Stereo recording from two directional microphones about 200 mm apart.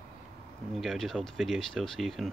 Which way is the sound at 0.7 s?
Centre (ahead or behind).